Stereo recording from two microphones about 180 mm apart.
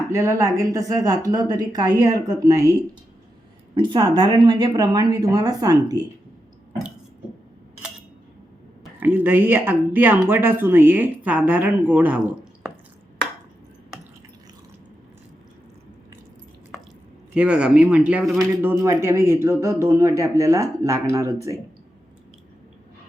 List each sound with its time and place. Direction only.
0.1 s speech: 20° right (ahead or behind)
3.8 s speech: 25° right (ahead or behind)
8.8 s speech: 10° right (ahead or behind)
17.3 s speech: 5° right (ahead or behind)
18.3 s speech: 15° right (ahead or behind)